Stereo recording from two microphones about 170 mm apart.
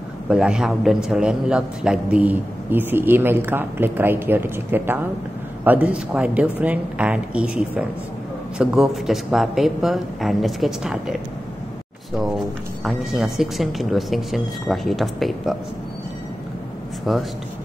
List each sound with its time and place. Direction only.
0.3 s a man's voice: 5° right (ahead or behind)
12.8 s speech: centre (ahead or behind)
17.1 s speech: centre (ahead or behind)